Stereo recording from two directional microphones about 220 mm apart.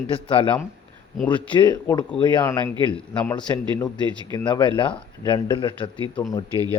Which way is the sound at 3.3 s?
20° left (ahead or behind).